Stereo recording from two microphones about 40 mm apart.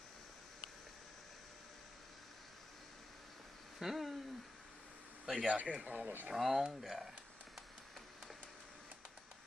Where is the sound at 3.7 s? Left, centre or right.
Centre.